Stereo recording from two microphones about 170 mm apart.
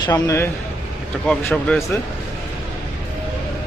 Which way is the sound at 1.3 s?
5° left (ahead or behind).